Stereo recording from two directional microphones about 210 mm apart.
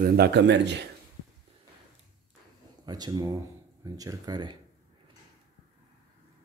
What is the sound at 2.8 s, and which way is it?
Speech, 20° right (ahead or behind).